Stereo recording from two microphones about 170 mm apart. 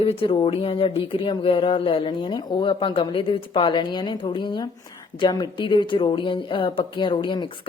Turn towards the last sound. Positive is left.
turn(degrees=25)  # may be behind; listen again after turning